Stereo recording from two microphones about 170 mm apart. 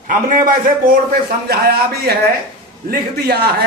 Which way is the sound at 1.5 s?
65° right (ahead or behind).